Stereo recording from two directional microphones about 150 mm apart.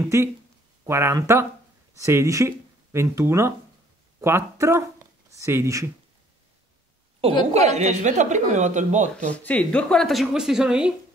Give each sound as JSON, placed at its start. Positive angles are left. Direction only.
{"t": 0.0, "sound": "speech", "side_deg": -15}
{"t": 7.5, "sound": "speech", "side_deg": -45}
{"t": 9.3, "sound": "a woman's voice", "side_deg": 10}